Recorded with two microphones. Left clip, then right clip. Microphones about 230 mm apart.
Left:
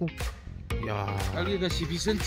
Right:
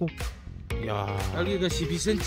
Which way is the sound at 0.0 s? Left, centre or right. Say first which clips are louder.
Right 2 dB; centre.